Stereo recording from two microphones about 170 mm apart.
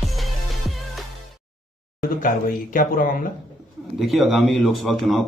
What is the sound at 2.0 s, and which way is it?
Speech, 55° left (ahead or behind).